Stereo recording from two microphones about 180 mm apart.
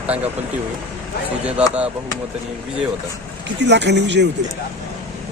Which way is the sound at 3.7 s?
70° right (ahead or behind).